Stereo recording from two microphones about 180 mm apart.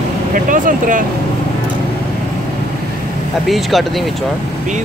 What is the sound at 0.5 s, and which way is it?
Speech, 45° right (ahead or behind).